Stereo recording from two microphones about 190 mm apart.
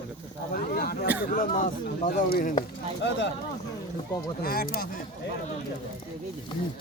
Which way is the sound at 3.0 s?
70° left (ahead or behind).